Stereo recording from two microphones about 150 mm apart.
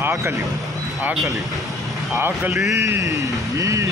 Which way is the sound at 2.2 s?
15° right (ahead or behind).